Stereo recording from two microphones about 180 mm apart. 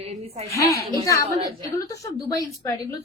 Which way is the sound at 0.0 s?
35° right (ahead or behind).